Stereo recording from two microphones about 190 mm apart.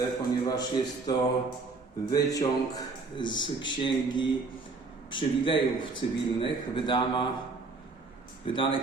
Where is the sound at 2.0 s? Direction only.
20° left (ahead or behind).